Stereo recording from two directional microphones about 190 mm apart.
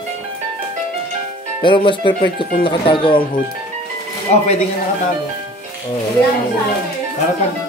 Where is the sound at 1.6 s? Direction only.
25° left (ahead or behind).